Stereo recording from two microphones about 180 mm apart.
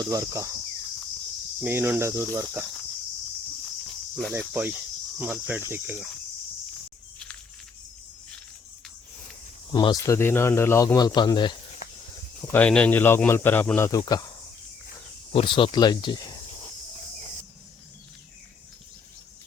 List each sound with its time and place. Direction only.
0.1 s speech: 20° right (ahead or behind)
1.6 s speech: 10° right (ahead or behind)
4.4 s speech: 5° right (ahead or behind)
9.7 s speech: 20° left (ahead or behind)
11.8 s a sound: 50° left (ahead or behind)
12.5 s a man's voice: 10° left (ahead or behind)
15.3 s speech: 30° left (ahead or behind)